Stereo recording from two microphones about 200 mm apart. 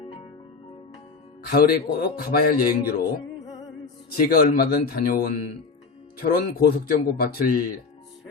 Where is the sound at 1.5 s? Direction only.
50° left (ahead or behind).